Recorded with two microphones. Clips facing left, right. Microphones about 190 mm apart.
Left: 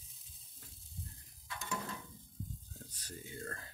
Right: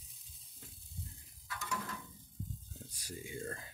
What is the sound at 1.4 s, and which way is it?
Stir, 25° left (ahead or behind).